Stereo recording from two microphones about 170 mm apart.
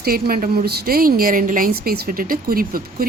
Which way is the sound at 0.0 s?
60° right (ahead or behind).